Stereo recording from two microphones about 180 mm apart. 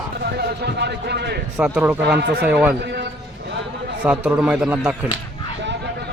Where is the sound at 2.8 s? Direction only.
75° right (ahead or behind).